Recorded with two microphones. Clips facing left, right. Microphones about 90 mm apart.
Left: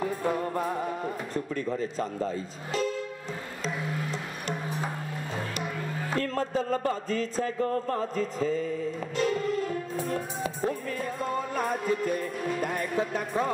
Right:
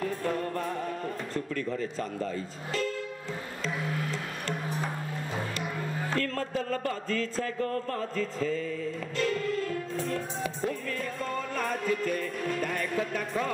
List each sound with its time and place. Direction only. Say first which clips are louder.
0.0 s speech: left 2 dB; 15° left (ahead or behind)
3.6 s music: even; 20° left (ahead or behind)
6.0 s music: left 3 dB; 20° left (ahead or behind)